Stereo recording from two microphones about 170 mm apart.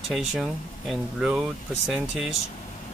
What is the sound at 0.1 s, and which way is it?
Speech, centre (ahead or behind).